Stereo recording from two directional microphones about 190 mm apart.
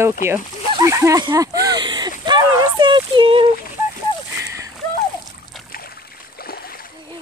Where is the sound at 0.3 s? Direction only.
15° right (ahead or behind).